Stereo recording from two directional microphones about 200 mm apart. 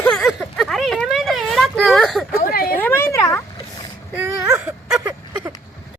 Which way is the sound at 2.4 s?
50° left (ahead or behind).